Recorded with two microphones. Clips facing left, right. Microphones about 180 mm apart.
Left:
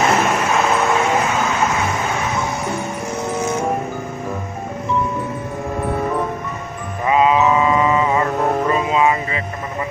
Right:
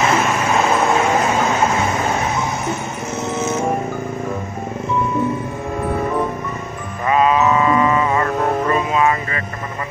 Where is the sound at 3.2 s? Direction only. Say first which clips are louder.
Right 1 dB; 20° right (ahead or behind).